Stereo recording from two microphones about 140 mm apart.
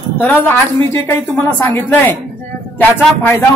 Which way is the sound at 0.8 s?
20° left (ahead or behind).